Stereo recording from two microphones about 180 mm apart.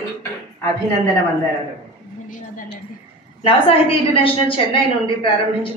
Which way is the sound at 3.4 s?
30° left (ahead or behind).